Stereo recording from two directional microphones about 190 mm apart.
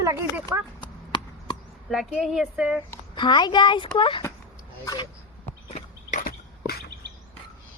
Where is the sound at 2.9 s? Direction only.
25° left (ahead or behind).